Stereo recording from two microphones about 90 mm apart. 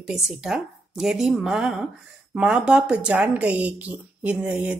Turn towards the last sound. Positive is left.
turn(degrees=-15)  # may be behind; listen again after turning